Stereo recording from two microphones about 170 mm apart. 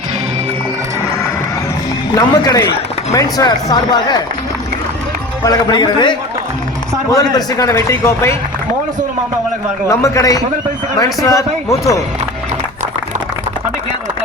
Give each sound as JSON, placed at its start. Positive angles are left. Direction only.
{"t": 2.1, "sound": "speech", "side_deg": 20}
{"t": 5.4, "sound": "a man's voice", "side_deg": 25}
{"t": 9.9, "sound": "speech", "side_deg": 20}